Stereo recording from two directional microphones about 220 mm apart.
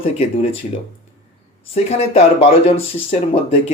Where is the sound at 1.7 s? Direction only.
30° left (ahead or behind).